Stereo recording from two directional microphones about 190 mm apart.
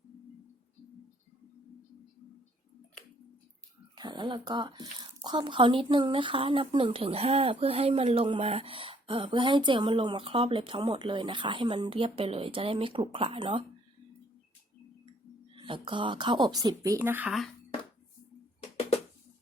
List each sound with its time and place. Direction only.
3.9 s speech: 20° right (ahead or behind)
15.5 s speech: 25° right (ahead or behind); by 17.5 s centre (ahead or behind)